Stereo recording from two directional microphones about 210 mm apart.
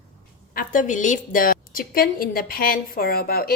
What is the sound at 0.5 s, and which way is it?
A woman's voice, 40° left (ahead or behind).